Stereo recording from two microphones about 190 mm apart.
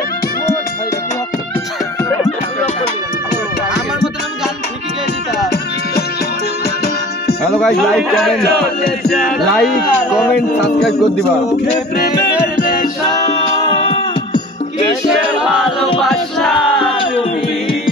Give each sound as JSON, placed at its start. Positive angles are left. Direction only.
{"t": 6.6, "sound": "music", "side_deg": 55}
{"t": 7.6, "sound": "speech", "side_deg": 0}
{"t": 11.9, "sound": "music", "side_deg": 55}
{"t": 15.0, "sound": "music", "side_deg": -5}